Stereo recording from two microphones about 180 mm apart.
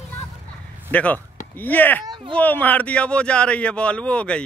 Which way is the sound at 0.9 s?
10° left (ahead or behind).